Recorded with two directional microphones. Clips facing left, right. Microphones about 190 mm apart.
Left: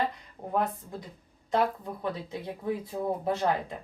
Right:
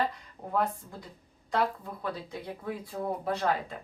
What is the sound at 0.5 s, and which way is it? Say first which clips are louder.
Speech: left 1 dB; 20° left (ahead or behind).